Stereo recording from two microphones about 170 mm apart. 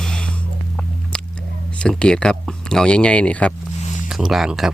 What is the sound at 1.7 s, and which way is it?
Speech, 5° left (ahead or behind).